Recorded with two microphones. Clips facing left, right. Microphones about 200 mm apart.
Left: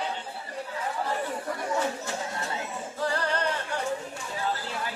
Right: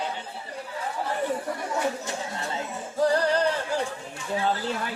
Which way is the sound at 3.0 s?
40° right (ahead or behind).